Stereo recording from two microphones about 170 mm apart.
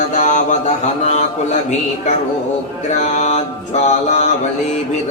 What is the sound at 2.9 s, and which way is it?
Mantra, 45° left (ahead or behind).